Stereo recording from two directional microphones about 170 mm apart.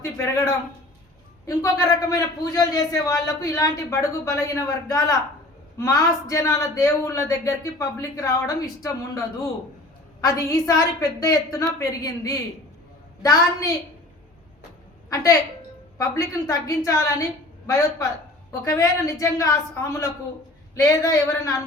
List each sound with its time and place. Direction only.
1.5 s a man's voice: 20° left (ahead or behind)
15.1 s a man's voice: 20° left (ahead or behind)